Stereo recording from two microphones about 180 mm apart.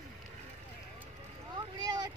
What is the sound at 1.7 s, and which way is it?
Boat, 25° right (ahead or behind).